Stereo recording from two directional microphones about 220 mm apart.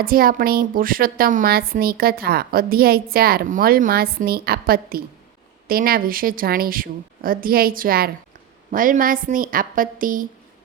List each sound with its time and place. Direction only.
0.0 s a woman's voice: 40° right (ahead or behind)